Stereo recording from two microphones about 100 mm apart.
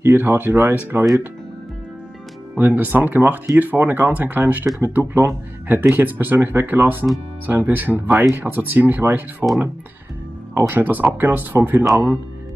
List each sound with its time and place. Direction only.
0.0 s speech: 20° right (ahead or behind)
2.5 s speech: 20° right (ahead or behind)
10.5 s speech: 25° right (ahead or behind)